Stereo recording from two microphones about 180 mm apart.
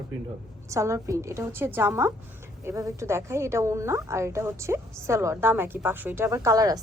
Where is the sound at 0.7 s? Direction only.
15° right (ahead or behind).